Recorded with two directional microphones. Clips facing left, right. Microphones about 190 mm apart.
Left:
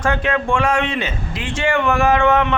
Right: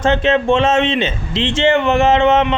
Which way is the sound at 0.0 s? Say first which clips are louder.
Right 5 dB; 25° right (ahead or behind).